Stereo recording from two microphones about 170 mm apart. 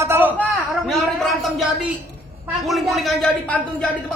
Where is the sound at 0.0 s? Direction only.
10° right (ahead or behind).